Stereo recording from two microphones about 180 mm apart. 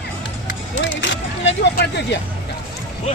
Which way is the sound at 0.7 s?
90° left.